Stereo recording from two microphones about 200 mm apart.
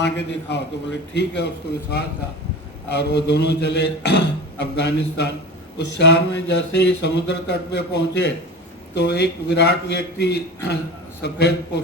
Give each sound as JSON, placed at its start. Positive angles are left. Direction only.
{"t": 0.0, "sound": "speech", "side_deg": 60}
{"t": 2.9, "sound": "speech", "side_deg": 55}